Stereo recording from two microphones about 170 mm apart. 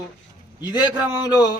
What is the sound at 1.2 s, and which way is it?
Speech, 20° left (ahead or behind).